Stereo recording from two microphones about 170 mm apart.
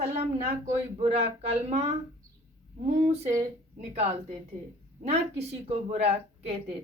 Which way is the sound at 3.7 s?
40° right (ahead or behind).